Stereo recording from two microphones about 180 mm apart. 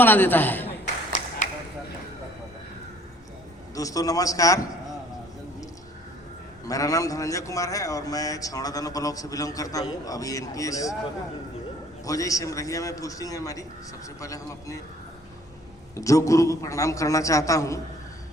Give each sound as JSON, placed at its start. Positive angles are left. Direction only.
{"t": 0.0, "sound": "a man's voice", "side_deg": 10}
{"t": 1.4, "sound": "a sound", "side_deg": 45}
{"t": 3.8, "sound": "a man's voice", "side_deg": 20}
{"t": 6.7, "sound": "a man's voice", "side_deg": 20}
{"t": 12.0, "sound": "a man's voice", "side_deg": 20}
{"t": 16.0, "sound": "a man's voice", "side_deg": 15}